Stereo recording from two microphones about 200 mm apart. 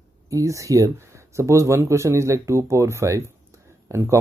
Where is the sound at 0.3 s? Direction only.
15° right (ahead or behind).